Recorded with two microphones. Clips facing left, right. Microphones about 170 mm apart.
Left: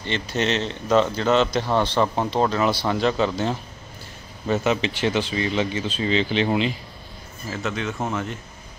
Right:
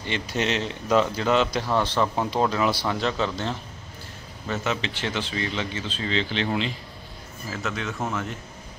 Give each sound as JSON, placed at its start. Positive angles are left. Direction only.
{"t": 0.0, "sound": "speech", "side_deg": -10}
{"t": 4.5, "sound": "speech", "side_deg": 15}
{"t": 7.6, "sound": "speech", "side_deg": 0}